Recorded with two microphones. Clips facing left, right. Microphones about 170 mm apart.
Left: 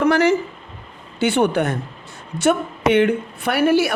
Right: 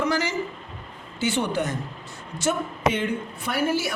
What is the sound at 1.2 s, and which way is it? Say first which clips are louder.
A woman's voice: left 7 dB; 60° left (ahead or behind).